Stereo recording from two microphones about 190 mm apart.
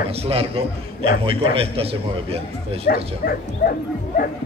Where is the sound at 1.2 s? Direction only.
30° right (ahead or behind).